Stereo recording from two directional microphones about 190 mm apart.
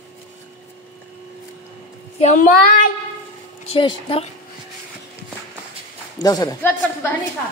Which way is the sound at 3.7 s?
25° left (ahead or behind).